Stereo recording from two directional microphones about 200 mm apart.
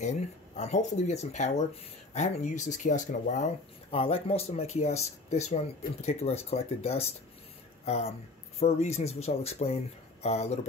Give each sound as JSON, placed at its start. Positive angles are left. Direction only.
{"t": 0.6, "sound": "speech", "side_deg": 35}